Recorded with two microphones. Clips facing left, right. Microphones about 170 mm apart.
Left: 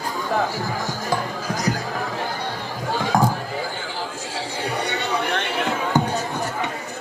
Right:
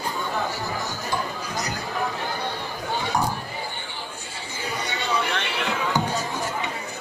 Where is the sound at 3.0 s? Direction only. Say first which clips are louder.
Left 6 dB; 90° left.